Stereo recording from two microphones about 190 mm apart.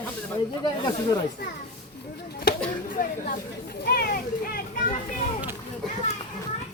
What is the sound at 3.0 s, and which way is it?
Speech, 45° left (ahead or behind).